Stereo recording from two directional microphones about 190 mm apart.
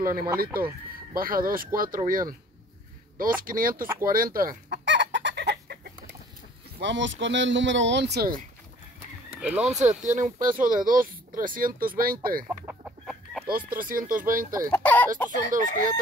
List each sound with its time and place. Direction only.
0.4 s speech: 50° right (ahead or behind)
4.8 s chicken: 70° right (ahead or behind)
6.8 s speech: 70° right (ahead or behind); by 8.4 s 55° right (ahead or behind)
9.4 s speech: 5° right (ahead or behind)
9.8 s speech: 40° right (ahead or behind)
12.4 s chicken: 5° right (ahead or behind)
13.5 s speech: 50° right (ahead or behind)
14.7 s a sound: 10° left (ahead or behind)
15.3 s speech: 45° right (ahead or behind)